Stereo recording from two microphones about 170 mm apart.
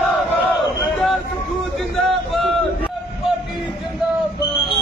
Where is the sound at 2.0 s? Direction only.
Centre (ahead or behind).